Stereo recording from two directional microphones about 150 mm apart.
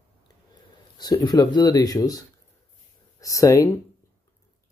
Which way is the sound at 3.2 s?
20° left (ahead or behind).